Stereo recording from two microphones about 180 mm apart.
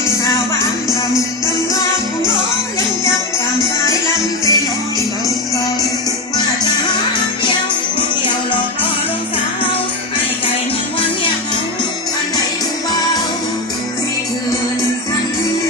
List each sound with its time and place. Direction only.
3.8 s music: 15° left (ahead or behind)